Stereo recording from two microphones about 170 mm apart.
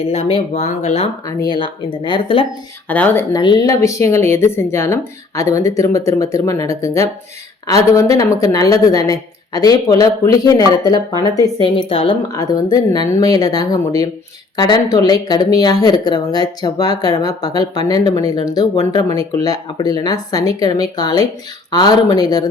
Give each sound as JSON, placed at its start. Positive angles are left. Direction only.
{"t": 0.0, "sound": "speech", "side_deg": 35}
{"t": 1.4, "sound": "speech", "side_deg": 30}
{"t": 2.9, "sound": "speech", "side_deg": 10}
{"t": 3.3, "sound": "speech", "side_deg": 25}
{"t": 11.6, "sound": "speech", "side_deg": 30}
{"t": 12.4, "sound": "speech", "side_deg": 20}